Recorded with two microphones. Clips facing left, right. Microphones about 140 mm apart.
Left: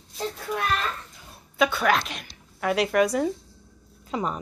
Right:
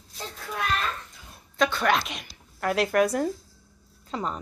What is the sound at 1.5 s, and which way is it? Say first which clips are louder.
Speech: left 1 dB; 5° left (ahead or behind).